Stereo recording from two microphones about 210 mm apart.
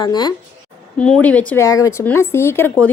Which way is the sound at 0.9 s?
5° left (ahead or behind).